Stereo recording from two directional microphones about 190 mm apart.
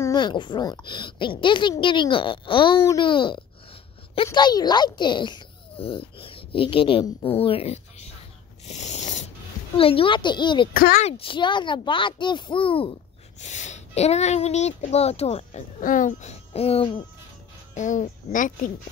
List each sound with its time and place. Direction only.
0.0 s speech: 25° left (ahead or behind)
8.6 s zipper: 35° left (ahead or behind)
9.8 s speech: 30° left (ahead or behind)
10.7 s speech: 50° left (ahead or behind)
11.1 s speech: 30° left (ahead or behind)
13.4 s speech: 40° left (ahead or behind)
15.8 s speech: 45° left (ahead or behind)
17.7 s speech: 40° left (ahead or behind)